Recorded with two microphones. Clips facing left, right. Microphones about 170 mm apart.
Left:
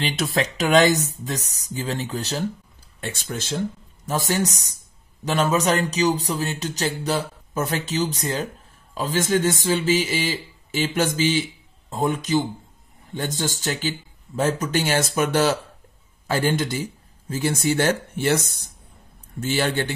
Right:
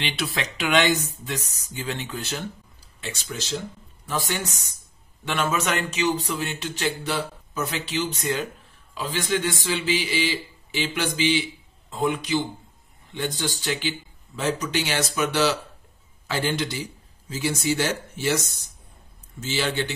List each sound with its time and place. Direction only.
0.0 s a man's voice: 45° left (ahead or behind)
3.0 s a man's voice: 50° left (ahead or behind)